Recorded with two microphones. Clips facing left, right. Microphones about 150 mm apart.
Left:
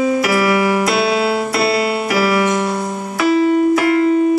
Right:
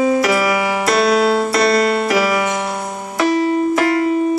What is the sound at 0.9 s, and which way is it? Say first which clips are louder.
Piano: right 2 dB; 40° right (ahead or behind).